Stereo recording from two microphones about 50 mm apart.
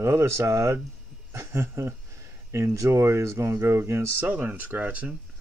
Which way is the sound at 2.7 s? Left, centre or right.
Right.